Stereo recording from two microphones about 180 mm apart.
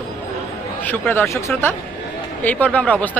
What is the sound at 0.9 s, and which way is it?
Speech, 10° left (ahead or behind).